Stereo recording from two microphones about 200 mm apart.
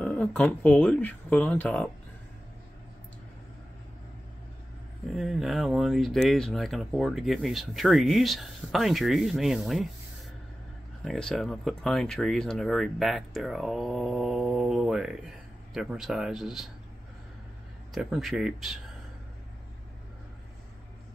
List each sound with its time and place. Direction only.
0.0 s speech: 5° left (ahead or behind)
5.1 s speech: centre (ahead or behind)
11.1 s speech: 5° left (ahead or behind)
17.9 s speech: centre (ahead or behind)